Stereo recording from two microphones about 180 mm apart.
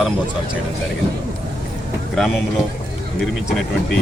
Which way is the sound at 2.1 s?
Centre (ahead or behind).